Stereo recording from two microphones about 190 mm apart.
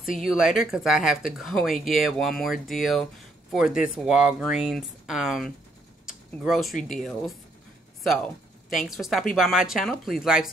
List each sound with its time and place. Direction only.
0.0 s speech: centre (ahead or behind)